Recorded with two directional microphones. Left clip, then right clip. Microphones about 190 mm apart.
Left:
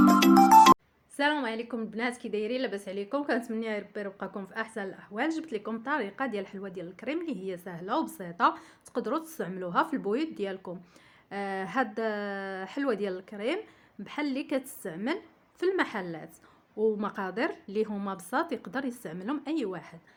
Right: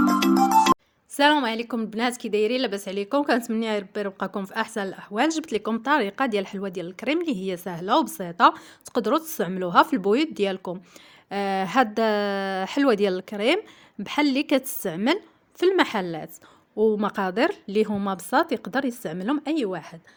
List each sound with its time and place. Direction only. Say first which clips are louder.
0.0 s music: even; centre (ahead or behind)
1.1 s a woman's voice: right 9 dB; 60° right (ahead or behind); by 20.0 s 40° right (ahead or behind)